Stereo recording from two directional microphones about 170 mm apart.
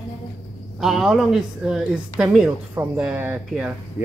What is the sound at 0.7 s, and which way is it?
A woman's voice, centre (ahead or behind).